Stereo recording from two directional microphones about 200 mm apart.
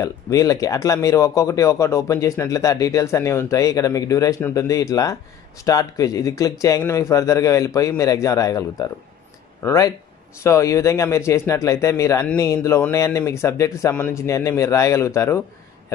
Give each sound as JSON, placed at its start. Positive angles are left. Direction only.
{"t": 0.0, "sound": "speech", "side_deg": 15}